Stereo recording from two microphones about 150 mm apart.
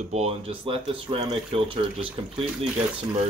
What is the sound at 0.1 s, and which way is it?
Speech, 40° right (ahead or behind).